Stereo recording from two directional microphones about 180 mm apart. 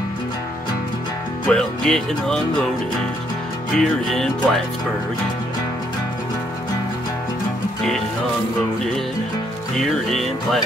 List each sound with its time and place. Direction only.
1.5 s speech: 5° left (ahead or behind)
3.7 s speech: 5° left (ahead or behind)
9.8 s speech: centre (ahead or behind)